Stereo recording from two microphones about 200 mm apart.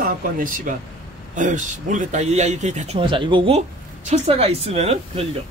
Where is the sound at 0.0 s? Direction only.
40° right (ahead or behind).